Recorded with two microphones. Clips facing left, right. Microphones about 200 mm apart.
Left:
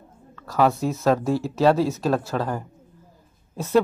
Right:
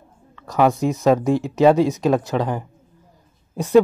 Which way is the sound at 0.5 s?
15° right (ahead or behind).